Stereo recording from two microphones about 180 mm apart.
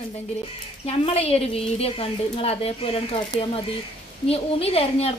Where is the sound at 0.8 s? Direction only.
35° left (ahead or behind).